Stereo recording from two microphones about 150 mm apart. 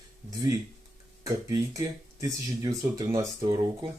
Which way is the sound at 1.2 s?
20° right (ahead or behind).